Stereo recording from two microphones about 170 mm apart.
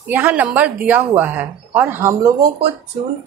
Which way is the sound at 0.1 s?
10° right (ahead or behind).